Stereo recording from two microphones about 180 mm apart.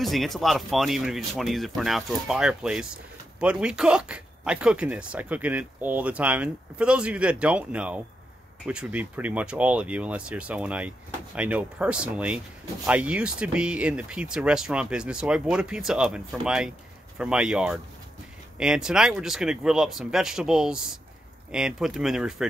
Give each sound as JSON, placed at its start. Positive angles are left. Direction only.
{"t": 0.0, "sound": "speech", "side_deg": 0}